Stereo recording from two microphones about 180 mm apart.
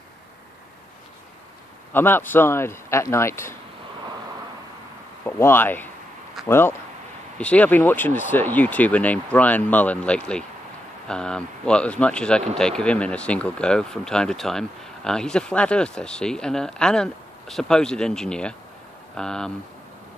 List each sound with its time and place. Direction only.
1.9 s speech: 10° left (ahead or behind)
5.2 s speech: 10° left (ahead or behind)